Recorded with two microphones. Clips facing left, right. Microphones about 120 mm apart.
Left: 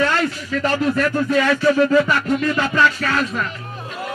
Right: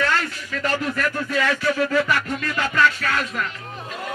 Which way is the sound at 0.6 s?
30° left (ahead or behind).